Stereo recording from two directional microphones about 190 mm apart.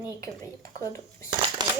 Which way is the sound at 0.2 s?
15° left (ahead or behind).